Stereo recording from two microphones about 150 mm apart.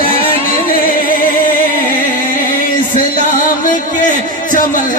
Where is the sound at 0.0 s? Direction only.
70° left (ahead or behind).